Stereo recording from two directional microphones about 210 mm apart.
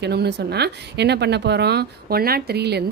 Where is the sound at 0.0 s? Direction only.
50° right (ahead or behind).